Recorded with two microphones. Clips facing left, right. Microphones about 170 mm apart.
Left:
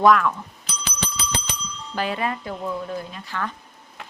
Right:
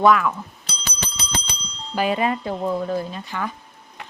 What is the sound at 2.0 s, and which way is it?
Speech, 15° right (ahead or behind).